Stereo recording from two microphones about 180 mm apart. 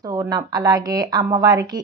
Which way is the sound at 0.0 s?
20° right (ahead or behind).